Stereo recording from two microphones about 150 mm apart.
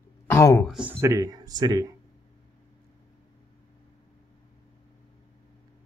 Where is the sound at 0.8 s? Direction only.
15° right (ahead or behind).